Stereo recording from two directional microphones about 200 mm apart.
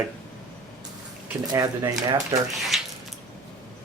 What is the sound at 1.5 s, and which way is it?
Speech, 15° right (ahead or behind).